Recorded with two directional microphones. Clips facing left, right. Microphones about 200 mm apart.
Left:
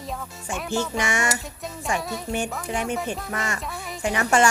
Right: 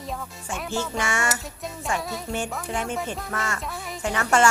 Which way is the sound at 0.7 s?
15° left (ahead or behind).